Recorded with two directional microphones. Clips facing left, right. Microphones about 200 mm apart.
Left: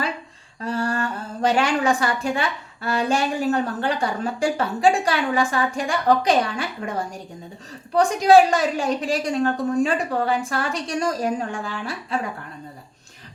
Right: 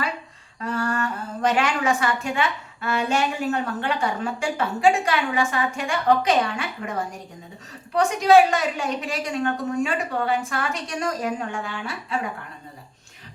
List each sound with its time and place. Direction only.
0.6 s humming: 30° left (ahead or behind)
2.8 s speech: 35° left (ahead or behind)